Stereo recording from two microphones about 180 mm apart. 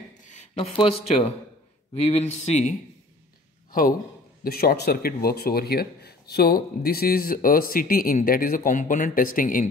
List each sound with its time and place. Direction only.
0.2 s a sound: 40° left (ahead or behind)
2.0 s speech: 40° left (ahead or behind)
4.4 s speech: 55° left (ahead or behind)